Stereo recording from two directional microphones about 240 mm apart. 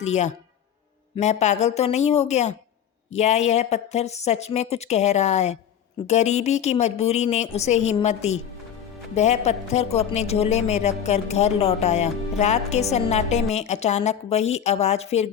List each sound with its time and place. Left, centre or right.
0.0 s a woman's voice: left